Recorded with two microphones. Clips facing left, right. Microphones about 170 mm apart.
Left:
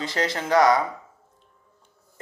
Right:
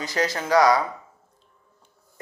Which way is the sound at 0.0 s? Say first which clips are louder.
Right 1 dB; 25° left (ahead or behind).